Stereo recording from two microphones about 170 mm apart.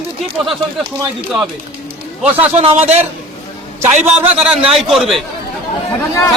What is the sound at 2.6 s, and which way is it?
Speech, 40° right (ahead or behind).